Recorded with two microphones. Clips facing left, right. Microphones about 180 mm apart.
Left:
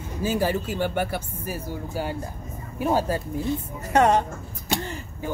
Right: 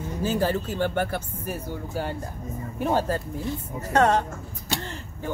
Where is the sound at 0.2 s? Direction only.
10° left (ahead or behind).